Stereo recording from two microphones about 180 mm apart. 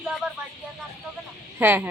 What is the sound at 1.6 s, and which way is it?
Speech, 10° right (ahead or behind).